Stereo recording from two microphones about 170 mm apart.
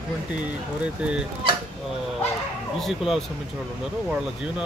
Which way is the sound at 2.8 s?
Centre (ahead or behind).